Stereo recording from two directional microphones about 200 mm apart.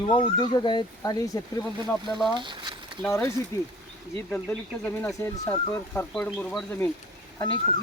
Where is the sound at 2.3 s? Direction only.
25° right (ahead or behind).